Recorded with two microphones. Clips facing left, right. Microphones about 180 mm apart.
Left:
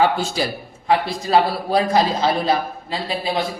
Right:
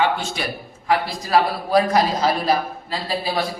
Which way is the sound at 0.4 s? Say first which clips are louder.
Left 4 dB; 35° left (ahead or behind).